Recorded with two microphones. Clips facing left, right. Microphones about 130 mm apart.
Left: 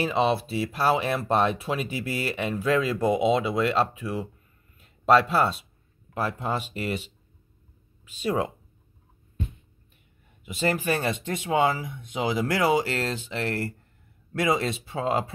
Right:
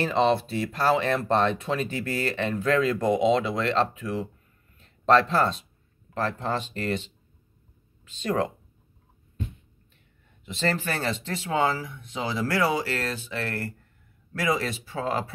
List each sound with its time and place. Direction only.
0.0 s speech: 5° left (ahead or behind)
4.7 s a sound: 10° left (ahead or behind)
6.1 s speech: 10° left (ahead or behind)
10.4 s speech: 10° left (ahead or behind)